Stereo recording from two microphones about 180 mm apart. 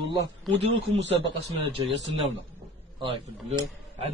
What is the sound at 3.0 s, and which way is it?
A man's voice, 30° right (ahead or behind).